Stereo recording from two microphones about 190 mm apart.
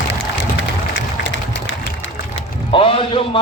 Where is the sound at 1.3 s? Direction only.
80° left.